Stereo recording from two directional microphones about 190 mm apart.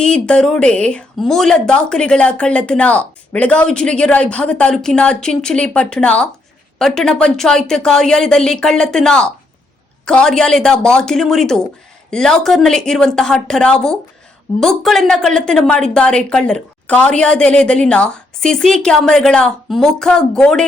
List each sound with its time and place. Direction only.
0.0 s speech: 5° left (ahead or behind)